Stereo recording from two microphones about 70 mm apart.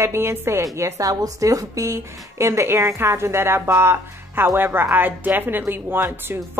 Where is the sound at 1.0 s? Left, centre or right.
Right.